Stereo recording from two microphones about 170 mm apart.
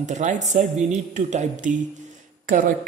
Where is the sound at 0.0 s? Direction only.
45° right (ahead or behind).